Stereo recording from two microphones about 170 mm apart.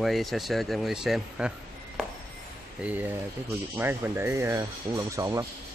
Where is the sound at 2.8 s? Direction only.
10° right (ahead or behind).